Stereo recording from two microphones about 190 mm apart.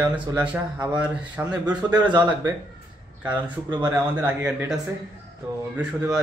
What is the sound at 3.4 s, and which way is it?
Speech, 25° right (ahead or behind).